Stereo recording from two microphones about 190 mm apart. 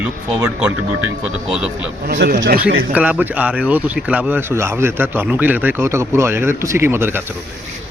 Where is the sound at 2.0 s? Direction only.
60° right (ahead or behind).